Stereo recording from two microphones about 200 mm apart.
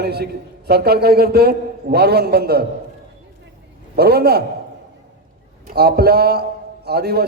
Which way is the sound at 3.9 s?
50° right (ahead or behind).